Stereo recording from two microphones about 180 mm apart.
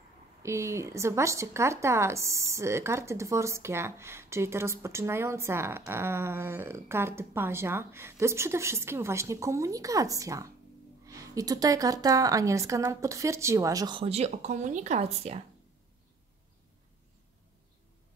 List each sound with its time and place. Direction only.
0.4 s a woman's voice: 15° right (ahead or behind); by 15.4 s 35° right (ahead or behind)